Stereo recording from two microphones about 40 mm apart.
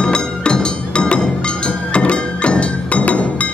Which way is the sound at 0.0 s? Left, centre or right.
Left.